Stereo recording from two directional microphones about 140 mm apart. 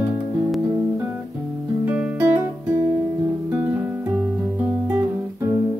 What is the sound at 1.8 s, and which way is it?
Music, 10° right (ahead or behind).